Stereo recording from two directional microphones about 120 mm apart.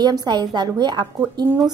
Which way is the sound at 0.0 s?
35° right (ahead or behind).